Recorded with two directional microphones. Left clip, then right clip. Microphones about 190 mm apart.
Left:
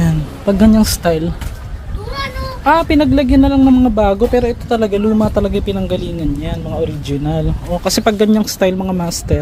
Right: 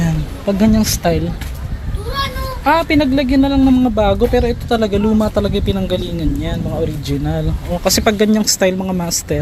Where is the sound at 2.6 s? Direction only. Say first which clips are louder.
Left 2 dB; 15° left (ahead or behind).